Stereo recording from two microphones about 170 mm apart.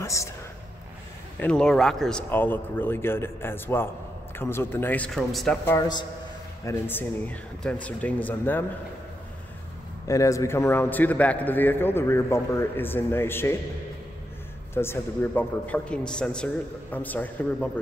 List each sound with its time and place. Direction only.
0.0 s a man's voice: 20° left (ahead or behind)
1.4 s a man's voice: 5° left (ahead or behind)
5.7 s a man's voice: 20° left (ahead or behind)
10.0 s a man's voice: 20° left (ahead or behind)
14.7 s a man's voice: 15° left (ahead or behind)